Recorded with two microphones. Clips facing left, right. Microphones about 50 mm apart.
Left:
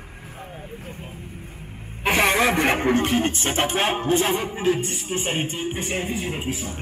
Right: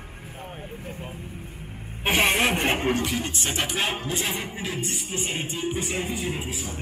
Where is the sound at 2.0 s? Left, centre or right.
Left.